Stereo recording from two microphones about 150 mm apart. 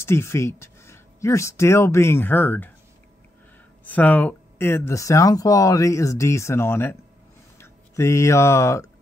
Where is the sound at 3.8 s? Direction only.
10° left (ahead or behind).